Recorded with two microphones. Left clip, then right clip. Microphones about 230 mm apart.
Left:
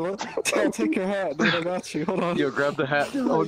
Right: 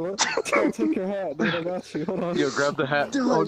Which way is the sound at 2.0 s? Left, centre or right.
Left.